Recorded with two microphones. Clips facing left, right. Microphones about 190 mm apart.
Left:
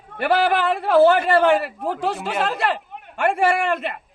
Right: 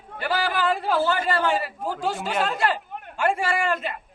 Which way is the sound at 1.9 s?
Centre (ahead or behind).